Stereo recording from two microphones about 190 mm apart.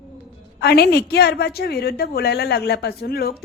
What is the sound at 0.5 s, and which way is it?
A woman's voice, 55° left (ahead or behind).